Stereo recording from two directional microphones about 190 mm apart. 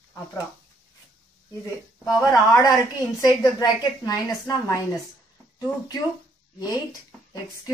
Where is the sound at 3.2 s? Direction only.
20° left (ahead or behind).